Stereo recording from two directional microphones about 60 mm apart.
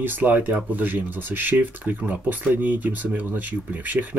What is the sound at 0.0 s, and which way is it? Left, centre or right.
Speech, right.